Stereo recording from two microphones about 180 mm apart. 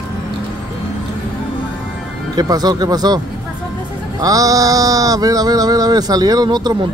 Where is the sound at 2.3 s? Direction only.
20° right (ahead or behind).